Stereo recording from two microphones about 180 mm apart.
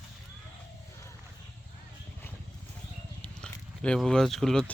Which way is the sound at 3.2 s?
5° left (ahead or behind).